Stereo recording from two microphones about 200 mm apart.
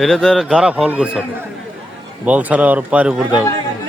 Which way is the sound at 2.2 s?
10° right (ahead or behind).